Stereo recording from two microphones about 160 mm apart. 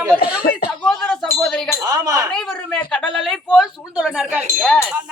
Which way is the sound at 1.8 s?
25° right (ahead or behind).